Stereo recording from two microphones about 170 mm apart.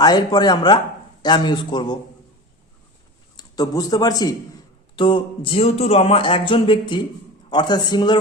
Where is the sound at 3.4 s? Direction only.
20° left (ahead or behind).